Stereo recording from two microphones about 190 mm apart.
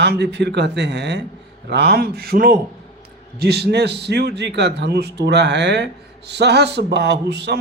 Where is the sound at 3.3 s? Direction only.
60° right (ahead or behind).